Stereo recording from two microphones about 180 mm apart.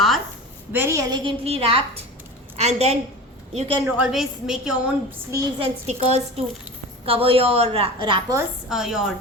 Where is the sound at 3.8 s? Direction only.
5° right (ahead or behind).